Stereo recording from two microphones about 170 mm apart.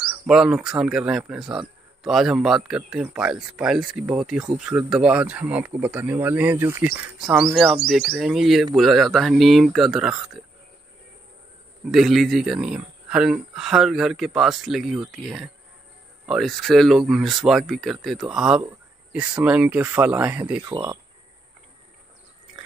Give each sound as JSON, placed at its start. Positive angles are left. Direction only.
{"t": 0.3, "sound": "a man's voice", "side_deg": -5}
{"t": 11.8, "sound": "a man's voice", "side_deg": 0}
{"t": 20.7, "sound": "speech", "side_deg": -25}